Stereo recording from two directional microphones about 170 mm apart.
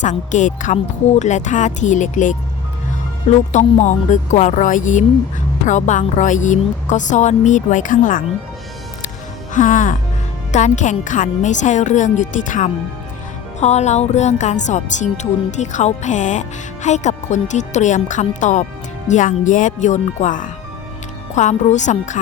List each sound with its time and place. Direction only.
0.0 s speech: 45° left (ahead or behind)
9.5 s speech: 50° left (ahead or behind)